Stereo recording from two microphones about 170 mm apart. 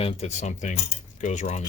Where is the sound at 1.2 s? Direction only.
45° left (ahead or behind).